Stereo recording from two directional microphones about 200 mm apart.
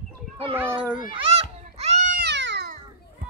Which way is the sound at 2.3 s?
60° right (ahead or behind).